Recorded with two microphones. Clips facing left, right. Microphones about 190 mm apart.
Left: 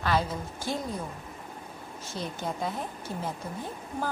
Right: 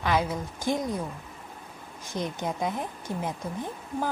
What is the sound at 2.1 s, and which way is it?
Speech, 15° right (ahead or behind).